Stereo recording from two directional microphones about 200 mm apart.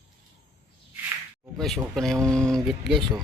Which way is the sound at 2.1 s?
15° right (ahead or behind).